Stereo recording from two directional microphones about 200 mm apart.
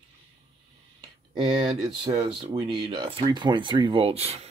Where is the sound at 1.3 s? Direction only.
20° right (ahead or behind).